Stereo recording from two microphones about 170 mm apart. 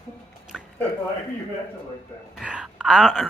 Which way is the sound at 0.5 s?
Centre (ahead or behind).